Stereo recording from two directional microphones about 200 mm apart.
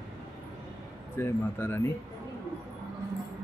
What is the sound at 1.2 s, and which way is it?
Speech, 10° left (ahead or behind).